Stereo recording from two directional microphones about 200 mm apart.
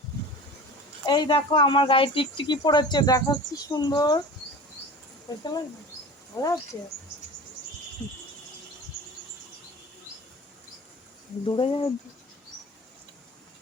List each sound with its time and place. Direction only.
1.0 s speech: 20° left (ahead or behind)
5.4 s speech: 20° left (ahead or behind)
11.4 s speech: 25° left (ahead or behind)